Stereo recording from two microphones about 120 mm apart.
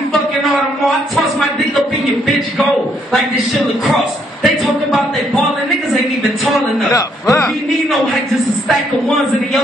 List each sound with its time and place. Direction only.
0.1 s a sound: centre (ahead or behind)
3.8 s a man's voice: centre (ahead or behind)
6.9 s a man's voice: 25° left (ahead or behind)